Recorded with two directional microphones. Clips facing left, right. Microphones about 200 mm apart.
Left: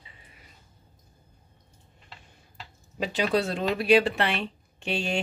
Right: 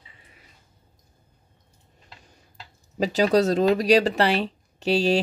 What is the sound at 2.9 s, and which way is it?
Speech, 40° right (ahead or behind).